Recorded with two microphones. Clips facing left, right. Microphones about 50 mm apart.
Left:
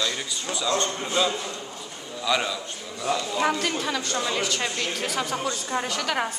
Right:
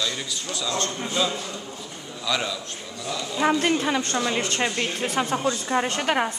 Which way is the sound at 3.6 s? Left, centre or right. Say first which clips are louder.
Right 4 dB; right.